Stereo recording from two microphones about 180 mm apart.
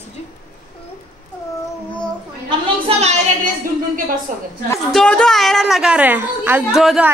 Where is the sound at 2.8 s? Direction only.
35° right (ahead or behind).